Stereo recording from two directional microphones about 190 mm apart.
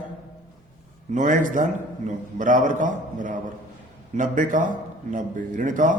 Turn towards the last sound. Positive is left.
turn(degrees=-40)  # may be behind; listen again after turning